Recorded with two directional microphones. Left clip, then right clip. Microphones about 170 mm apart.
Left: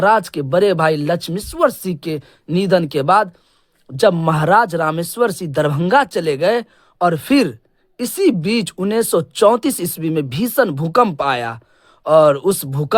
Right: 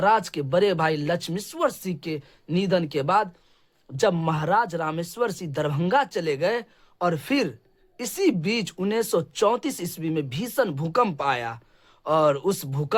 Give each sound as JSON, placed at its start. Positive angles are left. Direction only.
{"t": 0.0, "sound": "speech", "side_deg": 35}
{"t": 3.9, "sound": "speech", "side_deg": 30}
{"t": 4.4, "sound": "speech", "side_deg": 40}